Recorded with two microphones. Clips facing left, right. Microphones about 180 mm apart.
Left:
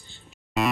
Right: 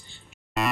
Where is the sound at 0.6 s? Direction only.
Centre (ahead or behind).